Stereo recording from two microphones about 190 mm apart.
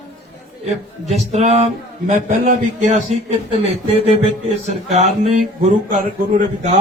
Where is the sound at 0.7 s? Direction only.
35° right (ahead or behind).